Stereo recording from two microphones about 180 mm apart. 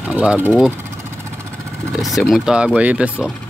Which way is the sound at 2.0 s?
Centre (ahead or behind).